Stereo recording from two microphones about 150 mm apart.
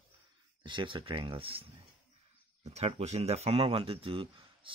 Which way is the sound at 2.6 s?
45° right (ahead or behind).